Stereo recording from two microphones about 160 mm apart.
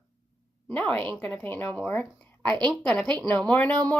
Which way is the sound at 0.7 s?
10° left (ahead or behind).